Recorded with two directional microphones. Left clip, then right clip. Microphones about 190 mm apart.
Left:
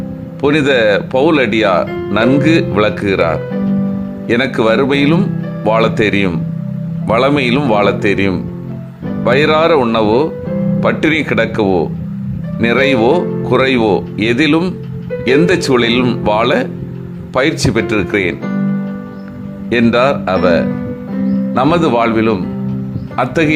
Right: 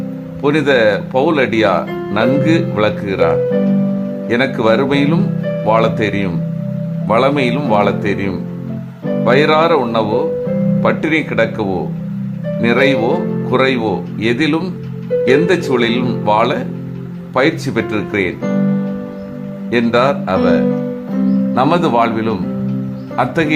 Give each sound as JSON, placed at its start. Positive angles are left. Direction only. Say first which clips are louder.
{"t": 0.4, "sound": "speech", "louder": "left 1 dB", "side_deg": 20}
{"t": 19.7, "sound": "speech", "louder": "left 2 dB", "side_deg": 25}